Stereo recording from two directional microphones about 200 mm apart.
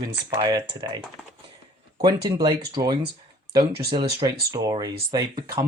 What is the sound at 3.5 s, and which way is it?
Speech, 50° right (ahead or behind).